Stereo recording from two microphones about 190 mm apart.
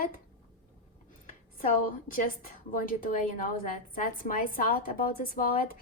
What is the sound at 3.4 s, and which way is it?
A woman's voice, 45° left (ahead or behind).